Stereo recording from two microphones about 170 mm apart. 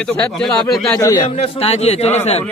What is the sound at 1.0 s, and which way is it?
Speech, 20° left (ahead or behind).